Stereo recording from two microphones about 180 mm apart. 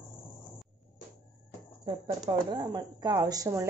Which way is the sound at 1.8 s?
25° right (ahead or behind).